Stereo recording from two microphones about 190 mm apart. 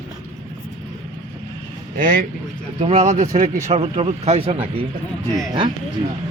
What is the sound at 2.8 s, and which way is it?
Speech, 35° right (ahead or behind).